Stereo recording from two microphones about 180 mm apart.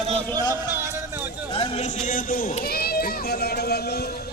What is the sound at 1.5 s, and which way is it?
Speech, 35° left (ahead or behind).